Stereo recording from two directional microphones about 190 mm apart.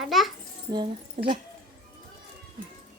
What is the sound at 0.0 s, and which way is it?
Speech, centre (ahead or behind).